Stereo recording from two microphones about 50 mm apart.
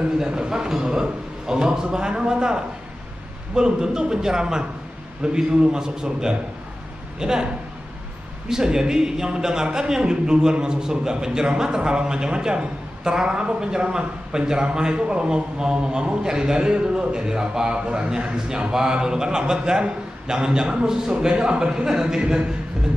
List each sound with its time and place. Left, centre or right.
0.2 s a man's voice: centre
8.5 s a man's voice: centre